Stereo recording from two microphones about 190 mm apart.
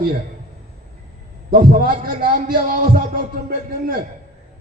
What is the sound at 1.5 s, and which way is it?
A man's voice, 50° right (ahead or behind).